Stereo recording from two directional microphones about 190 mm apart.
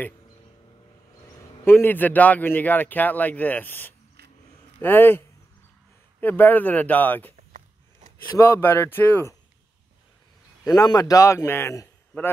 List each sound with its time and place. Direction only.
1.6 s speech: 10° left (ahead or behind)
6.2 s speech: 10° left (ahead or behind)
8.4 s speech: 15° left (ahead or behind)
10.6 s speech: 20° left (ahead or behind)